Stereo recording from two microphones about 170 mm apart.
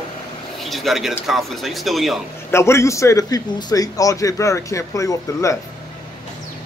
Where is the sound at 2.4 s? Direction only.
15° left (ahead or behind).